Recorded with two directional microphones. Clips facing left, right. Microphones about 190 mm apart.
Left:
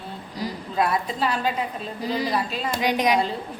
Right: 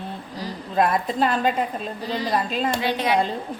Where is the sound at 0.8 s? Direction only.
50° right (ahead or behind).